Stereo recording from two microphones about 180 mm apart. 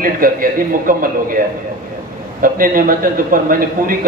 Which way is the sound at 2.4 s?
50° right (ahead or behind).